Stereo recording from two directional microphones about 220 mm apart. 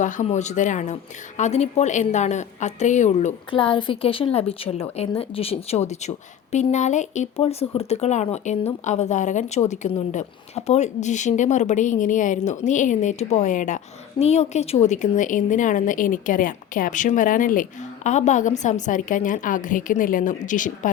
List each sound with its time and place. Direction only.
0.0 s a woman's voice: 35° left (ahead or behind)